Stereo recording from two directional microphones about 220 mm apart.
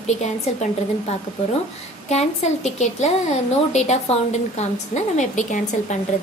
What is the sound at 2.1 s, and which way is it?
A woman's voice, 30° left (ahead or behind).